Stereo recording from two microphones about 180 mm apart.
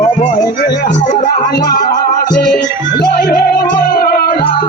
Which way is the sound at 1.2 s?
55° left (ahead or behind).